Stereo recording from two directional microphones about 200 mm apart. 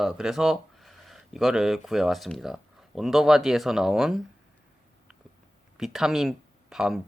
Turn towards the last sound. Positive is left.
turn(degrees=0)  # may be behind; listen again after turning